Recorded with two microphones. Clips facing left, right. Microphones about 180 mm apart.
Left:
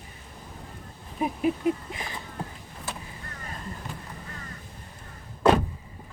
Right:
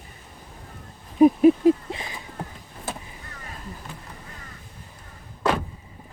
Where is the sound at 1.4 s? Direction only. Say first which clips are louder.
Right 9 dB; 30° right (ahead or behind).